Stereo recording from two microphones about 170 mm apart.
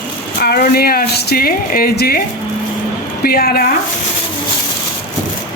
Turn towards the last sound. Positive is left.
turn(degrees=60)  # may be behind; listen again after turning